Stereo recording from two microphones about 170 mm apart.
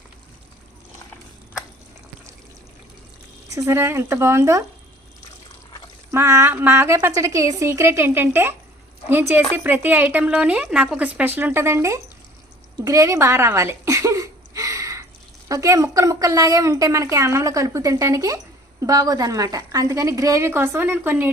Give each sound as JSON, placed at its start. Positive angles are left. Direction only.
{"t": 3.5, "sound": "a woman's voice", "side_deg": -15}
{"t": 6.1, "sound": "a woman's voice", "side_deg": -15}
{"t": 12.8, "sound": "a sound", "side_deg": -20}
{"t": 15.4, "sound": "a woman's voice", "side_deg": -20}